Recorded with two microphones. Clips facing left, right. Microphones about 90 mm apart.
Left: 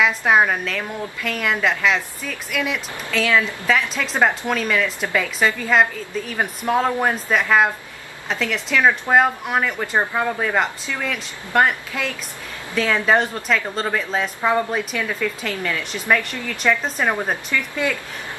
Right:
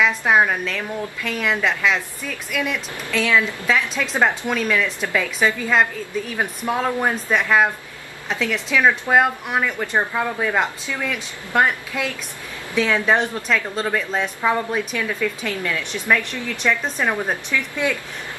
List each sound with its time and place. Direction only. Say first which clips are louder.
0.0 s a woman's voice: even; centre (ahead or behind)